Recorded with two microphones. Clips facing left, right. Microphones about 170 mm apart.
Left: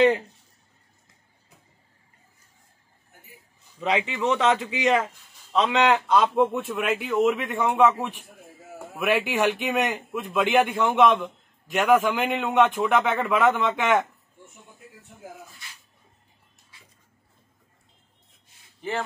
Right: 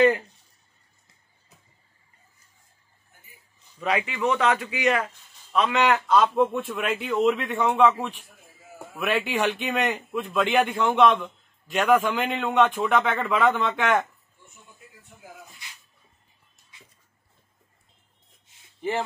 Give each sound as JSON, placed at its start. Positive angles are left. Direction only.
{"t": 3.8, "sound": "a man's voice", "side_deg": 20}
{"t": 6.7, "sound": "a man's voice", "side_deg": 5}